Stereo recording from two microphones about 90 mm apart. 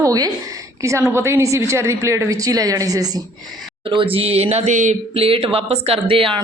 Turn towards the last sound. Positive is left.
turn(degrees=-85)